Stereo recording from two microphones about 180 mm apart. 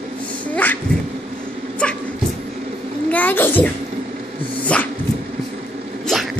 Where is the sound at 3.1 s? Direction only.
10° left (ahead or behind).